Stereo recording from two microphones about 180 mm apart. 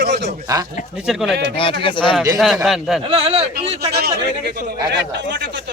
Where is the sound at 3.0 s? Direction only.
30° right (ahead or behind).